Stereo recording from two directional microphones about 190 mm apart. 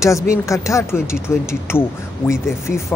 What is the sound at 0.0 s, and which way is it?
Speech, 15° left (ahead or behind).